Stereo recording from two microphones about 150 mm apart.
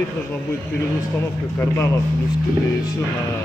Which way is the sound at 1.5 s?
20° left (ahead or behind).